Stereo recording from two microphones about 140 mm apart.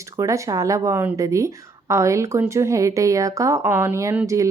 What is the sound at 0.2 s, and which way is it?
Speech, 20° right (ahead or behind).